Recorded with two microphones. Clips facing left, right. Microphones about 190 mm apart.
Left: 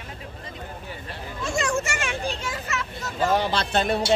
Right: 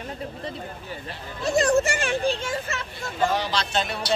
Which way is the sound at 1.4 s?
35° right (ahead or behind).